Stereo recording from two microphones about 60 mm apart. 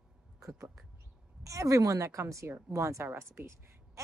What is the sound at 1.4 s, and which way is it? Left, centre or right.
A woman's voice, right.